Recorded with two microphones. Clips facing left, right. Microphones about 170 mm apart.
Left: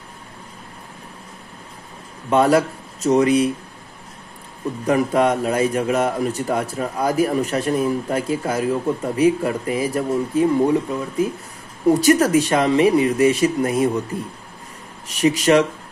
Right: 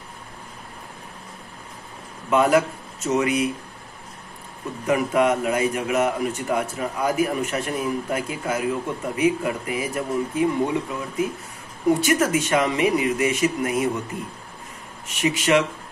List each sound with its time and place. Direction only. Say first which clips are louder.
2.2 s a man's voice: left 3 dB; 35° left (ahead or behind)
4.8 s a man's voice: left 2 dB; 35° left (ahead or behind)
15.0 s a man's voice: left 5 dB; 40° left (ahead or behind)